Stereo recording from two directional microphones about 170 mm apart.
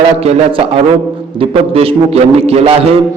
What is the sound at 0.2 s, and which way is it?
A man's voice, 35° right (ahead or behind).